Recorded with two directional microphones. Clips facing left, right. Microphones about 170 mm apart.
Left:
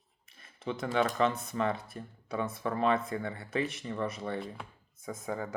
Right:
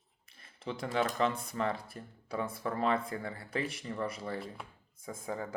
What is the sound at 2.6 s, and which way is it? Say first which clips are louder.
Speech: left 3 dB; 25° left (ahead or behind).